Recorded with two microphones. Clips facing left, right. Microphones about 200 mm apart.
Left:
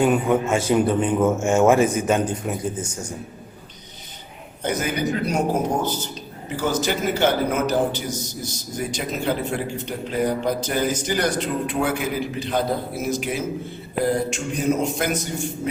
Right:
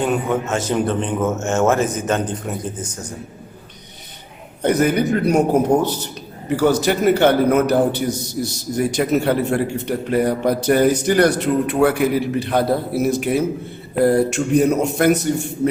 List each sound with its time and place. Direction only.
0.0 s a man's voice: 5° left (ahead or behind)
4.6 s a man's voice: 60° right (ahead or behind)